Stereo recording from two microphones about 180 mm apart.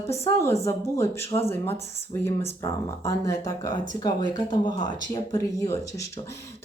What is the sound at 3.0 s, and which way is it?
Speech, 15° left (ahead or behind).